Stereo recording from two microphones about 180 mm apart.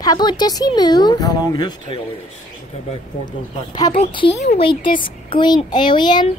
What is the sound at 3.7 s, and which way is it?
Speech, 25° left (ahead or behind).